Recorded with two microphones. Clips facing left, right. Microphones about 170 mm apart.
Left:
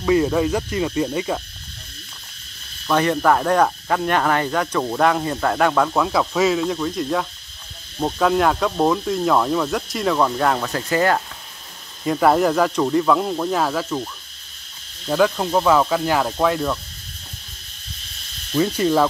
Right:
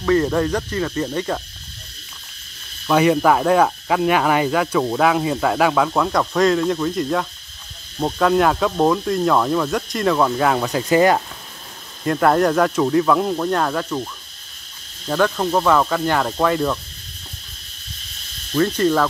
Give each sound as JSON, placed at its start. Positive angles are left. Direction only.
{"t": 0.0, "sound": "speech", "side_deg": 10}
{"t": 2.9, "sound": "speech", "side_deg": -10}
{"t": 10.7, "sound": "speech", "side_deg": -15}
{"t": 12.0, "sound": "speech", "side_deg": 5}
{"t": 15.0, "sound": "speech", "side_deg": 5}
{"t": 18.5, "sound": "speech", "side_deg": 10}